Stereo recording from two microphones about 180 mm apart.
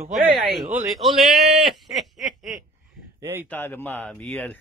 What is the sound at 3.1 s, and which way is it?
Speech, 15° right (ahead or behind).